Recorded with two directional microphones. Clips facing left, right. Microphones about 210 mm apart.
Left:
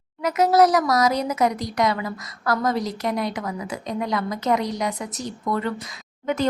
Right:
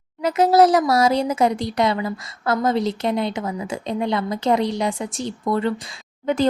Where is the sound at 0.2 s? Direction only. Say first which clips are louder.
Right 2 dB; 30° right (ahead or behind).